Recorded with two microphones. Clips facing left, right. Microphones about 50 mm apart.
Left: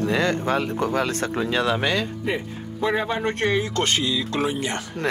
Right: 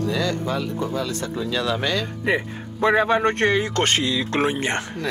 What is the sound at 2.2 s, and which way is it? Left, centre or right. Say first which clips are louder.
Speech: right 4 dB; right.